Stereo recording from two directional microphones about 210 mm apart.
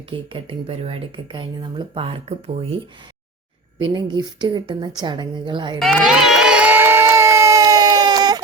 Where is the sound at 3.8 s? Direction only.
20° right (ahead or behind).